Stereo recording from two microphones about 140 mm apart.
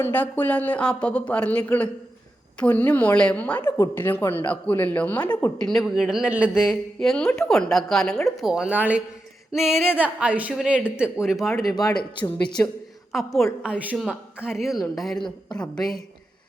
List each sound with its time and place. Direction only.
0.0 s a woman's voice: 15° left (ahead or behind); by 9.0 s 10° right (ahead or behind)
9.5 s a sound: 5° right (ahead or behind)
10.9 s a woman's voice: 5° right (ahead or behind)
11.4 s a woman's voice: 20° left (ahead or behind)
13.6 s a sound: 10° right (ahead or behind)
14.4 s a woman's voice: 5° right (ahead or behind)